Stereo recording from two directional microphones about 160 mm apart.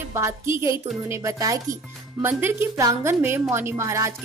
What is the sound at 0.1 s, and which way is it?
A woman's voice, 15° right (ahead or behind).